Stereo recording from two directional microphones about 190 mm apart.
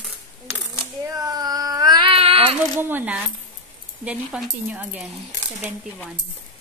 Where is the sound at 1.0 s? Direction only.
20° right (ahead or behind).